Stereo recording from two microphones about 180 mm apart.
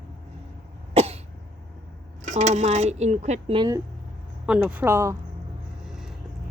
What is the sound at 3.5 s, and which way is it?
Speech, 25° right (ahead or behind).